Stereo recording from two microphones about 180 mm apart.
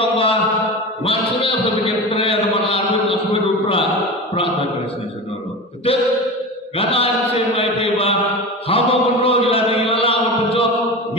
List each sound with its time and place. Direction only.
0.0 s mantra: 30° left (ahead or behind)
1.0 s a sound: 30° left (ahead or behind)
6.8 s mantra: 30° left (ahead or behind)
8.6 s chant: 30° left (ahead or behind)